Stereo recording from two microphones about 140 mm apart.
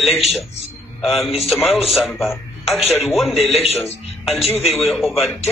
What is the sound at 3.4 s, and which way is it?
Speech, 45° left (ahead or behind).